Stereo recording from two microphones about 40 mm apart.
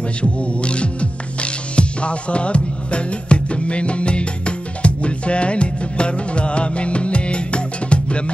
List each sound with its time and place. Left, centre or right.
0.2 s speech: left
1.4 s music: left